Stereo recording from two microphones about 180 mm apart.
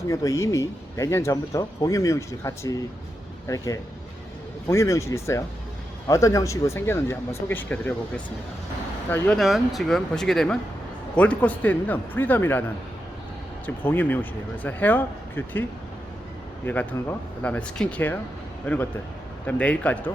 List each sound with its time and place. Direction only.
0.1 s speech: 15° left (ahead or behind)
9.4 s speech: centre (ahead or behind)
13.7 s speech: 10° left (ahead or behind)
16.6 s speech: 10° left (ahead or behind)